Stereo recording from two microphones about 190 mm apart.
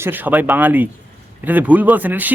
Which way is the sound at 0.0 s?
10° right (ahead or behind).